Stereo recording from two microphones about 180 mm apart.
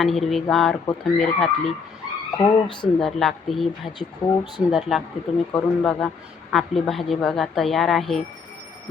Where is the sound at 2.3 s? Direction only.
20° left (ahead or behind).